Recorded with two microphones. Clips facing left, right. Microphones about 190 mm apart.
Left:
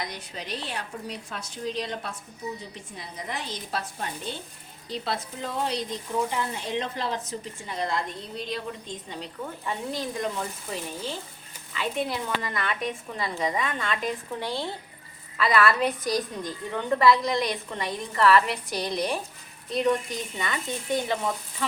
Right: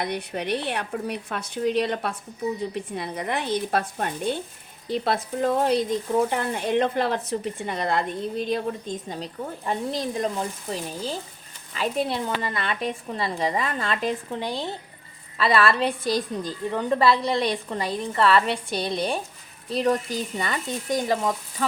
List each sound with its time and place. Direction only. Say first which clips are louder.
0.0 s speech: right 8 dB; 60° right (ahead or behind); by 10.4 s 35° right (ahead or behind)
11.7 s a woman's voice: right 3 dB; 35° right (ahead or behind)
14.3 s speech: right 2 dB; 15° right (ahead or behind)
15.4 s a woman's voice: right 2 dB; 30° right (ahead or behind)